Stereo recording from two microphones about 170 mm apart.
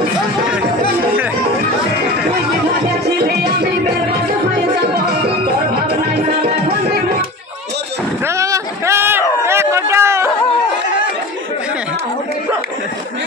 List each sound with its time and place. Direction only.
3.1 s music: 70° right (ahead or behind)
4.7 s music: 75° right (ahead or behind)
8.3 s a sound: 15° right (ahead or behind)